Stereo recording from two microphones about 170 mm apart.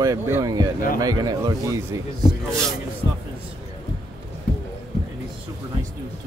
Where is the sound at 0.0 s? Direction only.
20° right (ahead or behind).